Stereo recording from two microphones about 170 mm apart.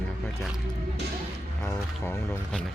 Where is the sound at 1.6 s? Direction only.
15° left (ahead or behind).